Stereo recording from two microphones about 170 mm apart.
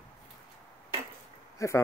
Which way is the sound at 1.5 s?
15° left (ahead or behind).